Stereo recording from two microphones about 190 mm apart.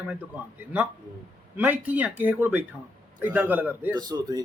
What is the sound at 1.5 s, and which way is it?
Speech, 10° right (ahead or behind).